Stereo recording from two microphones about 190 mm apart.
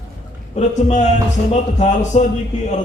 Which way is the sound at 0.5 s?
40° left (ahead or behind).